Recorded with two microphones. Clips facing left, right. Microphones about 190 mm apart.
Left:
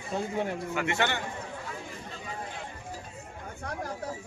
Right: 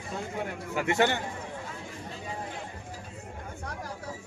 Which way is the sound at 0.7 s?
40° right (ahead or behind).